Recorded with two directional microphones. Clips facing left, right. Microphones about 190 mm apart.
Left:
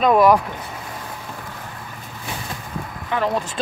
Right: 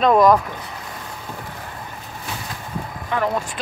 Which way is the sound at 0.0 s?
5° left (ahead or behind).